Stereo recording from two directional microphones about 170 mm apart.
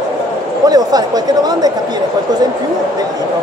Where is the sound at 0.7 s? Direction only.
20° right (ahead or behind).